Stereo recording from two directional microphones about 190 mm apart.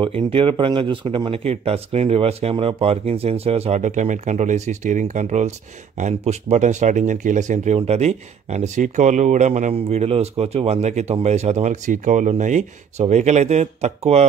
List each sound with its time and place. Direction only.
0.0 s speech: 30° right (ahead or behind)